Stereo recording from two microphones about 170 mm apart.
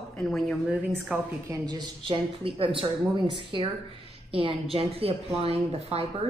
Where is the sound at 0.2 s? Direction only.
5° left (ahead or behind).